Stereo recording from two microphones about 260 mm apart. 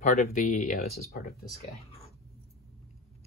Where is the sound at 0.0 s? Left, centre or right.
Left.